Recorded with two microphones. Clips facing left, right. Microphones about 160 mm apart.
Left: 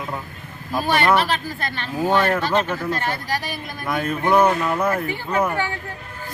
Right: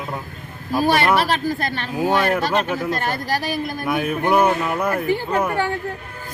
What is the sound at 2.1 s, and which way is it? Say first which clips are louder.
Speech: even; 10° right (ahead or behind).